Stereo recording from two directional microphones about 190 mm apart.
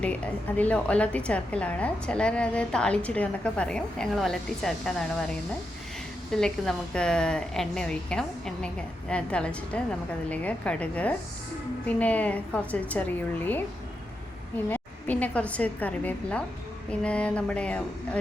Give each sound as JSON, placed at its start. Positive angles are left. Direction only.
{"t": 0.0, "sound": "a woman's voice", "side_deg": 5}
{"t": 6.3, "sound": "a woman's voice", "side_deg": 5}
{"t": 14.7, "sound": "a woman's voice", "side_deg": 10}